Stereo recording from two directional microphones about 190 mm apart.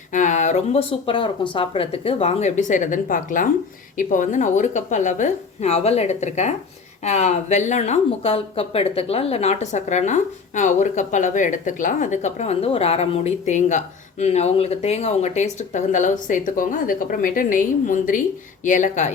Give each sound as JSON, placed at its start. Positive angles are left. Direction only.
{"t": 0.1, "sound": "speech", "side_deg": 40}